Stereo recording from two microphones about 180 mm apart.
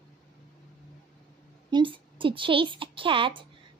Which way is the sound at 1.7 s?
25° right (ahead or behind).